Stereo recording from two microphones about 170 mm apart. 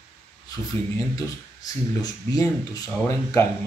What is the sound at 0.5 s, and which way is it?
Speech, 20° left (ahead or behind).